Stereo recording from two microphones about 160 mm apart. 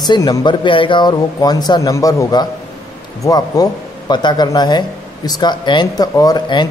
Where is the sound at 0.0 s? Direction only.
25° left (ahead or behind).